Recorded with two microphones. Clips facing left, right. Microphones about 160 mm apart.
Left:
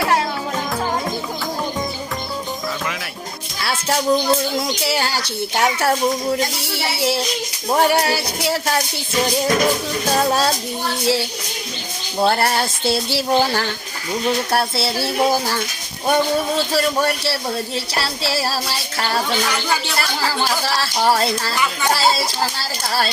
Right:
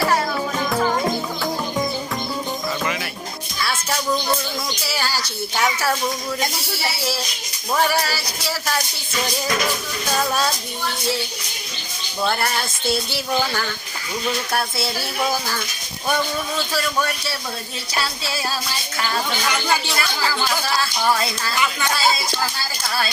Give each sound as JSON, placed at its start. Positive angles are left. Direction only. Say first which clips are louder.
{"t": 3.6, "sound": "a sound", "louder": "left 4 dB", "side_deg": 30}
{"t": 5.1, "sound": "speech", "louder": "left 3 dB", "side_deg": 60}
{"t": 6.7, "sound": "a sound", "louder": "left 8 dB", "side_deg": 25}
{"t": 10.1, "sound": "speech", "louder": "left 4 dB", "side_deg": 30}
{"t": 12.2, "sound": "speech", "louder": "left 5 dB", "side_deg": 35}
{"t": 18.3, "sound": "speech", "louder": "left 4 dB", "side_deg": 30}